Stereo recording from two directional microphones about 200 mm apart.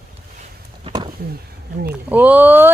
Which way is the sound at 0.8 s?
25° right (ahead or behind).